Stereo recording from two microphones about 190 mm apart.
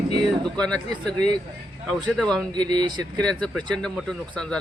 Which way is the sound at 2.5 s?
20° right (ahead or behind).